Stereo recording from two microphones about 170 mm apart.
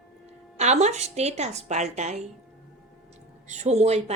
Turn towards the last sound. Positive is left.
turn(degrees=-40)  # may be behind; listen again after turning